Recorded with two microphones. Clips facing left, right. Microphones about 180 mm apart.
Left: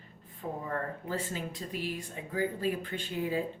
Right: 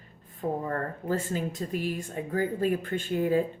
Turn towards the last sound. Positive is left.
turn(degrees=-50)  # may be behind; listen again after turning